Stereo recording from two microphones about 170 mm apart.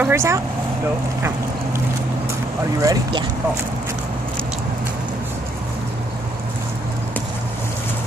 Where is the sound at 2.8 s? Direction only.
25° right (ahead or behind).